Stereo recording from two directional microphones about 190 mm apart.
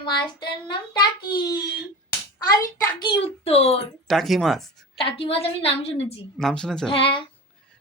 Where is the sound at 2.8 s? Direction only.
25° left (ahead or behind).